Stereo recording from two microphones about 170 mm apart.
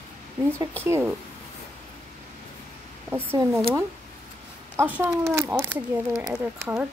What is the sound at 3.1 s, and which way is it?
Speech, 15° right (ahead or behind).